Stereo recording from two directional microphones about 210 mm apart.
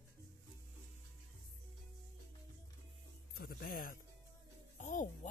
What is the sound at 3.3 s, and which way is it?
Music, 45° left (ahead or behind).